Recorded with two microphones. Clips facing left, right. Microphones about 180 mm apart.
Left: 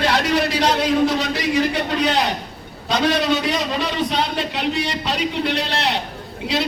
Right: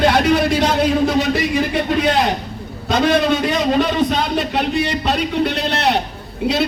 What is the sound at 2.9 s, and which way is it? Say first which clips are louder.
A man's voice: right 3 dB; 50° right (ahead or behind).